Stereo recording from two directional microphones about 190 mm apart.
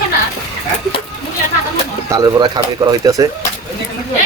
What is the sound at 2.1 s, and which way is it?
Speech, 20° right (ahead or behind).